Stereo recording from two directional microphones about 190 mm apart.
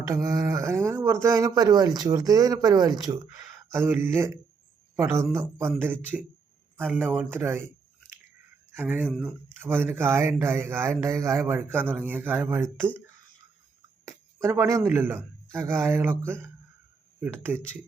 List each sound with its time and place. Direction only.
0.1 s speech: 20° right (ahead or behind)
8.7 s speech: 10° right (ahead or behind)
14.0 s a sound: 15° right (ahead or behind)
14.8 s speech: 10° right (ahead or behind)